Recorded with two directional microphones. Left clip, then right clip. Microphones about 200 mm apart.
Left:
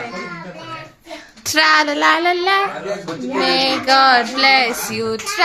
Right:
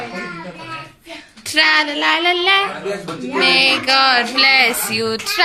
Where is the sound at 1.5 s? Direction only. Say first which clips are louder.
Left 1 dB; 45° left (ahead or behind).